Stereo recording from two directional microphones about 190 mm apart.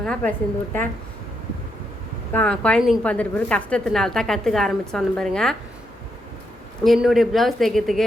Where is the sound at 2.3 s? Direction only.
5° left (ahead or behind).